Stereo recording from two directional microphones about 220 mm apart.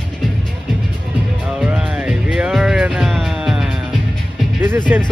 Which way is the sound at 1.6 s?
5° right (ahead or behind).